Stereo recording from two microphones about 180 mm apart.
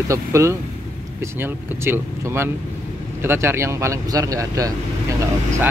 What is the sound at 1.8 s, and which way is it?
Speech, 15° right (ahead or behind).